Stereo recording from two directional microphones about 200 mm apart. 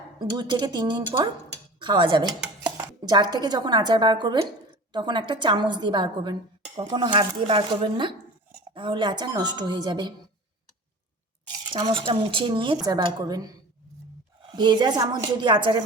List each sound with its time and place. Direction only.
0.2 s speech: 20° right (ahead or behind)
11.7 s speech: 25° right (ahead or behind)